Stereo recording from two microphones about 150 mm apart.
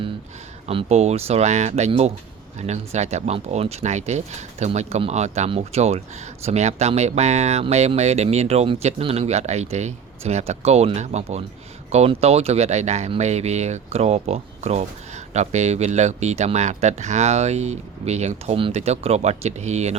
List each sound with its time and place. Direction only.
0.7 s speech: 40° right (ahead or behind)